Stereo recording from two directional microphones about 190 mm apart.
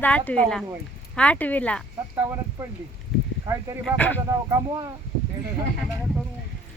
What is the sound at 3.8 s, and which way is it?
Speech, 10° left (ahead or behind).